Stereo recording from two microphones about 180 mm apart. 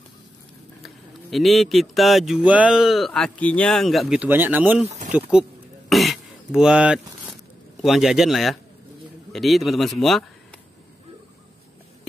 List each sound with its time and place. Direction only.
0.8 s speech: centre (ahead or behind)
4.8 s speech: 40° right (ahead or behind)
5.9 s throat clearing: centre (ahead or behind)
7.8 s a man's voice: centre (ahead or behind)